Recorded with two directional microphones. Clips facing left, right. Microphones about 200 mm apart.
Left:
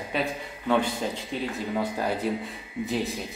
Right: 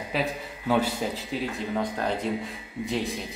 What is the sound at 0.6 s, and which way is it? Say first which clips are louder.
Speech: even; 10° right (ahead or behind).